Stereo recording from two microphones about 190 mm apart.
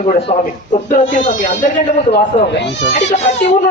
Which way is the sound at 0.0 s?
30° left (ahead or behind).